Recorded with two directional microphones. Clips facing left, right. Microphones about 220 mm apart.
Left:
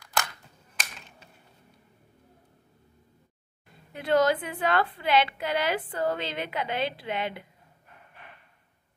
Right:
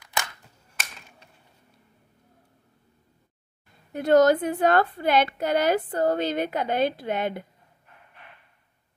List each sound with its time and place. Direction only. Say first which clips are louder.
3.9 s a woman's voice: right 6 dB; 45° right (ahead or behind)